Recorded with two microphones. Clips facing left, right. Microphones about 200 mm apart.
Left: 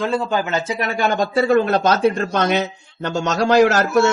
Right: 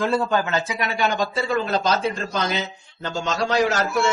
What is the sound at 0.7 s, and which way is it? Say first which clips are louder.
A man's voice: left 4 dB; 45° left (ahead or behind).